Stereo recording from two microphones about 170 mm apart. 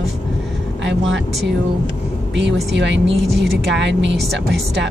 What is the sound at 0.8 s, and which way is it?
Vehicle, 90° right.